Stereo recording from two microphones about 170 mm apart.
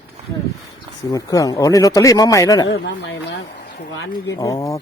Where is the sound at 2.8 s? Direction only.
90° left.